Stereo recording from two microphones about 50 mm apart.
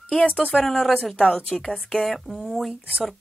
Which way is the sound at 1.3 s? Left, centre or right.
Centre.